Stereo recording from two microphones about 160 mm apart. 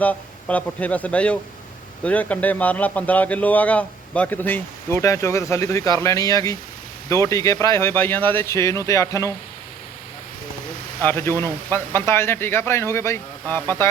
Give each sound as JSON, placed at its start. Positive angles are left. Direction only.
{"t": 0.0, "sound": "a man's voice", "side_deg": 10}
{"t": 11.0, "sound": "a man's voice", "side_deg": 15}